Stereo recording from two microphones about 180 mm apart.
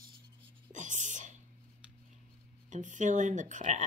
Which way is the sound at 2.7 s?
45° right (ahead or behind).